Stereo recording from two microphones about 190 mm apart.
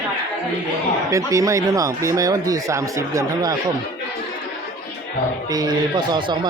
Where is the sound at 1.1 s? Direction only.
15° right (ahead or behind).